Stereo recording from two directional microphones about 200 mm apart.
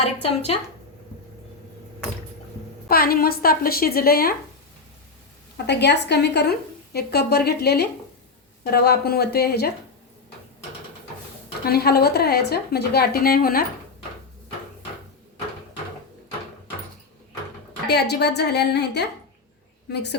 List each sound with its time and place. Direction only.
0.0 s speech: 30° left (ahead or behind)
2.9 s a woman's voice: 50° left (ahead or behind)
5.6 s a woman's voice: 55° left (ahead or behind)
11.6 s a woman's voice: 50° left (ahead or behind)
17.8 s a woman's voice: 55° left (ahead or behind)